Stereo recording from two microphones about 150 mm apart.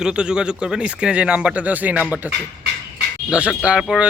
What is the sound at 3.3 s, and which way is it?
Speech, 5° right (ahead or behind).